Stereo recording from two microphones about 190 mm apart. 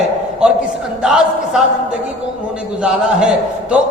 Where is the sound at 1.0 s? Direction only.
5° right (ahead or behind).